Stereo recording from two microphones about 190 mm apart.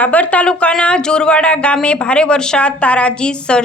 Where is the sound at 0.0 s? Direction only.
10° left (ahead or behind).